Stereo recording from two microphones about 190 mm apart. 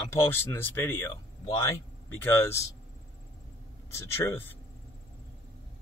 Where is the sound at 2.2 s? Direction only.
15° left (ahead or behind).